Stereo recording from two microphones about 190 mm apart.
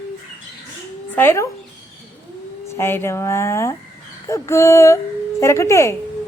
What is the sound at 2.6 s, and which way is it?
Speech, 15° left (ahead or behind).